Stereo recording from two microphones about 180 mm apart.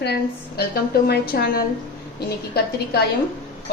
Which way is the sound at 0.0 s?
65° left (ahead or behind).